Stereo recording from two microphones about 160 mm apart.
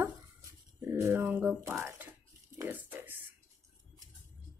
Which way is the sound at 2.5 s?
10° right (ahead or behind).